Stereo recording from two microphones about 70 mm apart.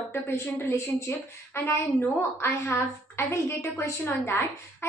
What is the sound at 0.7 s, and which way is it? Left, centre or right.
A woman's voice, left.